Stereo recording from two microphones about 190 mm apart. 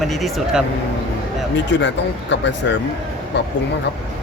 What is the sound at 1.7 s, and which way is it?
Speech, 65° left (ahead or behind).